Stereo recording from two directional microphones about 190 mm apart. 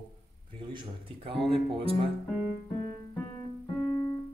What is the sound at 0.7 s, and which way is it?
Speech, 30° right (ahead or behind).